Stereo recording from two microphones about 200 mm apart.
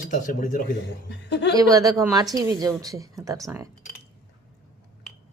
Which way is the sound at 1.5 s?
15° right (ahead or behind).